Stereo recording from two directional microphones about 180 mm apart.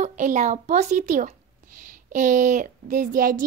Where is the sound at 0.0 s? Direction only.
45° right (ahead or behind).